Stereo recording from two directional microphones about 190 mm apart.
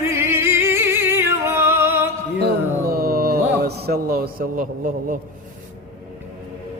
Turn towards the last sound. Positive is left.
turn(degrees=-45)  # may be behind; listen again after turning